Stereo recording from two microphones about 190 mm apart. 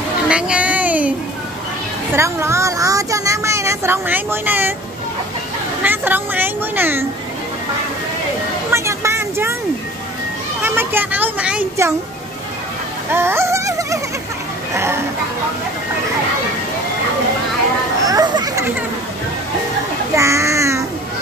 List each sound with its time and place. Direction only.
0.3 s a child's voice: 5° right (ahead or behind)
2.1 s speech: 15° right (ahead or behind)
5.9 s speech: 10° right (ahead or behind)
8.7 s vehicle: 15° right (ahead or behind)
10.6 s children playing: 10° right (ahead or behind)
13.1 s a sound: 15° right (ahead or behind)
14.7 s speech: 15° right (ahead or behind)
18.0 s a sound: 20° right (ahead or behind)
20.2 s child singing: 15° right (ahead or behind)